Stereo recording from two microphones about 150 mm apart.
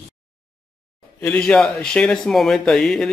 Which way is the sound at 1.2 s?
5° left (ahead or behind).